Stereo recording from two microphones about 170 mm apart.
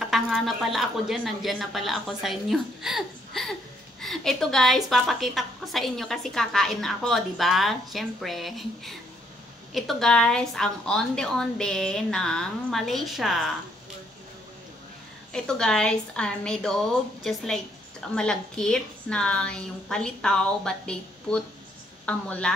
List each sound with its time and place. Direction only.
0.1 s a woman's voice: centre (ahead or behind)
15.3 s a woman's voice: 5° left (ahead or behind)